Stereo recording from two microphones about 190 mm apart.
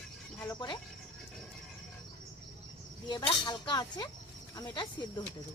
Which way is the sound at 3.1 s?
20° left (ahead or behind).